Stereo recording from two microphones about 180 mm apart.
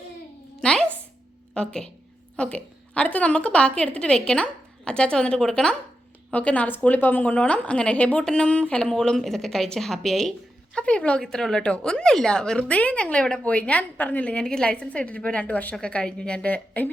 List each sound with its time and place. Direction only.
0.6 s music: 5° left (ahead or behind)
1.5 s a woman's voice: 5° left (ahead or behind)